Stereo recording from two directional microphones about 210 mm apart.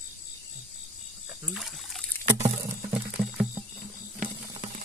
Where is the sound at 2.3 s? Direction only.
30° right (ahead or behind).